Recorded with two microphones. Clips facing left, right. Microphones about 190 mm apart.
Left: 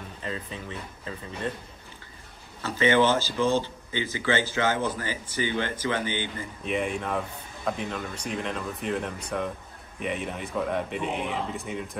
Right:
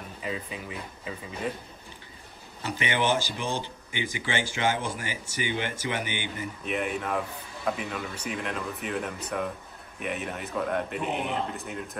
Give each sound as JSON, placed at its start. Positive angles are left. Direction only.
{"t": 0.2, "sound": "speech", "side_deg": -10}
{"t": 2.6, "sound": "speech", "side_deg": -15}
{"t": 6.6, "sound": "speech", "side_deg": 0}